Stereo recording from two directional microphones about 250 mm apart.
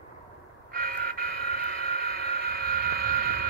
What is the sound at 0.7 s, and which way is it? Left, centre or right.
Train, right.